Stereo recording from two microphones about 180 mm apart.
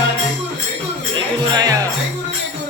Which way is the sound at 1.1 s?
20° right (ahead or behind).